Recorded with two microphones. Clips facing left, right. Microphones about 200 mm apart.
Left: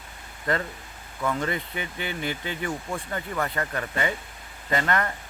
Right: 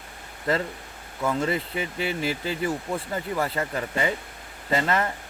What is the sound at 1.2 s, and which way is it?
Speech, 5° right (ahead or behind).